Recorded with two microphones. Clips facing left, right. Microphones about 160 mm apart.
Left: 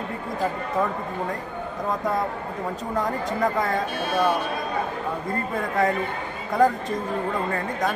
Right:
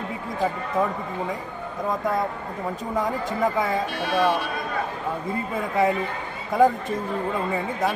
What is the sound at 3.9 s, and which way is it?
Speech, 15° right (ahead or behind).